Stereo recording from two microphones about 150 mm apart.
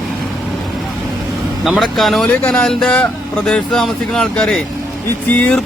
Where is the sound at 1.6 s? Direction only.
Centre (ahead or behind).